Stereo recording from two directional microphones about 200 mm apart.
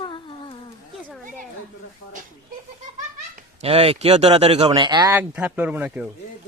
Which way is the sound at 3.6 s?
30° right (ahead or behind).